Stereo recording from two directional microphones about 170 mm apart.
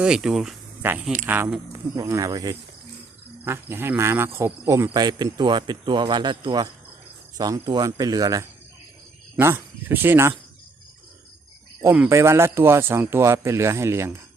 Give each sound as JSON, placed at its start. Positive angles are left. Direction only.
{"t": 0.0, "sound": "speech", "side_deg": -5}
{"t": 2.0, "sound": "a man's voice", "side_deg": -20}
{"t": 11.8, "sound": "a man's voice", "side_deg": -15}